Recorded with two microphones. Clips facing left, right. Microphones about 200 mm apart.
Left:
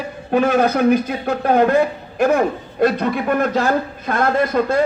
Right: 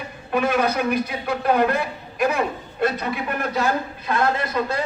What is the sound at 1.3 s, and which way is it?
Speech, 50° left (ahead or behind).